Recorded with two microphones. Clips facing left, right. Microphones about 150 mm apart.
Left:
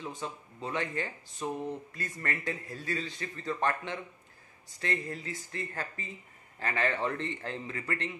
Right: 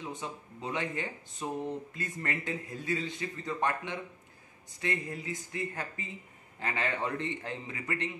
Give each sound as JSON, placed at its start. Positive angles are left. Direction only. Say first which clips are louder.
{"t": 0.0, "sound": "a man's voice", "louder": "even", "side_deg": -20}